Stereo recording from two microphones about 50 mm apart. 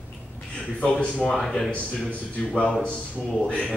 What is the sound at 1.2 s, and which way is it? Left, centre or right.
Speech, centre.